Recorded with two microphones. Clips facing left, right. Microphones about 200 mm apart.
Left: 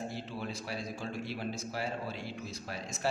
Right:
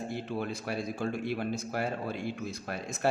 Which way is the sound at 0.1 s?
55° right (ahead or behind).